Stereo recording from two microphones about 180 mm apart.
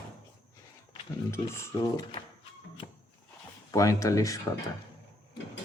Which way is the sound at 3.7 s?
20° left (ahead or behind).